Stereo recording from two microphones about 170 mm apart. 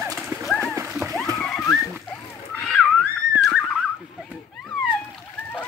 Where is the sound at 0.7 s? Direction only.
15° right (ahead or behind).